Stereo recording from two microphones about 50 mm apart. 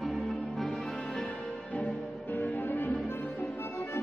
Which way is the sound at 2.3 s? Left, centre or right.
Left.